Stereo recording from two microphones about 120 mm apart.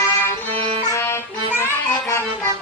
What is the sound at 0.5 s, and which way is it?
Music, 50° right (ahead or behind).